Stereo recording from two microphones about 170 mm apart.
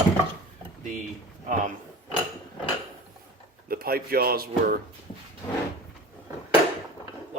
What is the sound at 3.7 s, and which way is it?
Speech, 60° right (ahead or behind).